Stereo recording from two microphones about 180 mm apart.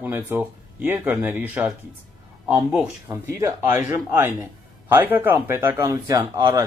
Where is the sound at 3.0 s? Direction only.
15° right (ahead or behind).